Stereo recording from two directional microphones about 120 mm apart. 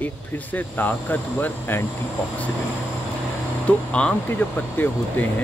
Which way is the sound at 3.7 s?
10° left (ahead or behind).